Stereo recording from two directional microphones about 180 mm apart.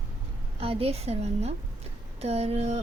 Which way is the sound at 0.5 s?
35° right (ahead or behind).